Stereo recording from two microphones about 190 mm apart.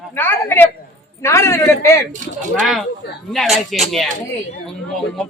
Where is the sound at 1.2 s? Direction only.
15° left (ahead or behind).